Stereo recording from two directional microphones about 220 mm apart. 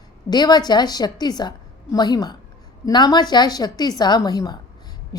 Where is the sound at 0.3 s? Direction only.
20° left (ahead or behind).